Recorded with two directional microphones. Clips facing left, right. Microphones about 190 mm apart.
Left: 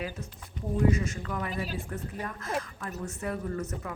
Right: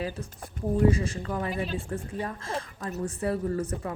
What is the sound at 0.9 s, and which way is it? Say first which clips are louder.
A woman's voice: right 2 dB; 30° right (ahead or behind).